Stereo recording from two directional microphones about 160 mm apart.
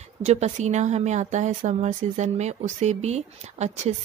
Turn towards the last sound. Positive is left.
turn(degrees=-45)  # may be behind; listen again after turning